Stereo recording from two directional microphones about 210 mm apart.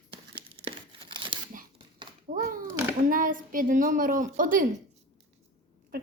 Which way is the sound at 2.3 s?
40° right (ahead or behind).